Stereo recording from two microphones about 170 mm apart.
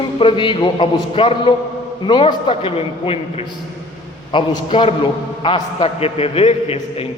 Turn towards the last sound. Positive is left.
turn(degrees=35)  # may be behind; listen again after turning